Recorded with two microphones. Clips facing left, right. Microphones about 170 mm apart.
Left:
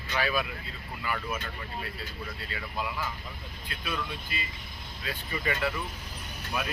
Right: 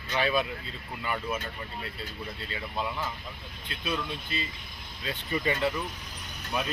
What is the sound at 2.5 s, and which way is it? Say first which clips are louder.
Speech: right 2 dB; 25° right (ahead or behind).